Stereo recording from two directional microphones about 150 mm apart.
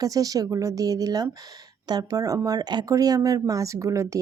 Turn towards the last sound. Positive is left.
turn(degrees=-20)  # may be behind; listen again after turning